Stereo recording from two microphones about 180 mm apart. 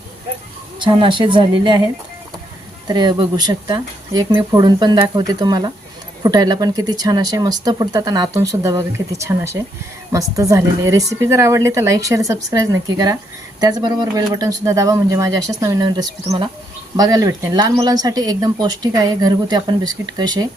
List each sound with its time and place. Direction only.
0.8 s speech: 25° right (ahead or behind)
2.8 s a woman's voice: 25° right (ahead or behind)